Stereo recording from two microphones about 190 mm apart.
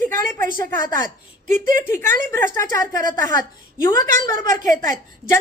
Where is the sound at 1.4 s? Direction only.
40° right (ahead or behind).